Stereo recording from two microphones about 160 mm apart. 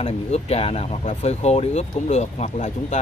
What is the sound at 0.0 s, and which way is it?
Speech, 40° left (ahead or behind).